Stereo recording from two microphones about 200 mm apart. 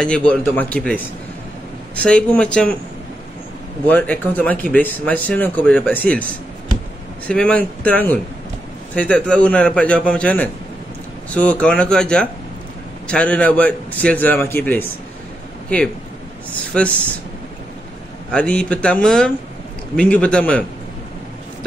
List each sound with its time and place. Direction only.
0.0 s a man's voice: 5° left (ahead or behind)
2.0 s a man's voice: 5° left (ahead or behind)
3.8 s speech: 5° left (ahead or behind)
7.2 s a man's voice: 5° left (ahead or behind)
16.7 s a man's voice: 5° left (ahead or behind)
18.3 s a man's voice: 5° left (ahead or behind)